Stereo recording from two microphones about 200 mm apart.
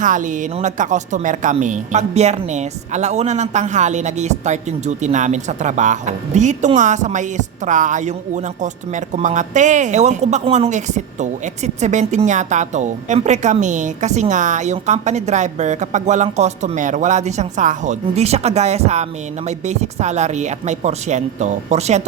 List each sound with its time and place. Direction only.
0.0 s speech: 40° right (ahead or behind)